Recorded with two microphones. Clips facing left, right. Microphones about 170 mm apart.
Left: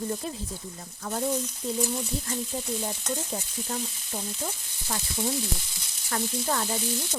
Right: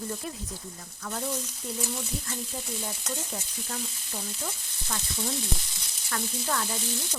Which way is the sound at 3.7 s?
30° left (ahead or behind).